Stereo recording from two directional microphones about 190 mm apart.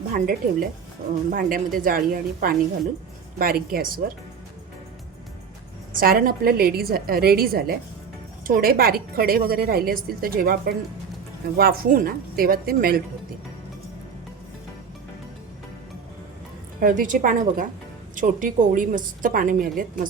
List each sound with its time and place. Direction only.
0.1 s a woman's voice: 50° right (ahead or behind)
5.9 s a woman's voice: 50° right (ahead or behind)
16.8 s a woman's voice: 45° right (ahead or behind)